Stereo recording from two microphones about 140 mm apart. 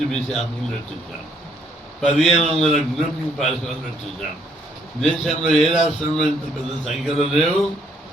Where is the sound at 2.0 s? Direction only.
5° left (ahead or behind).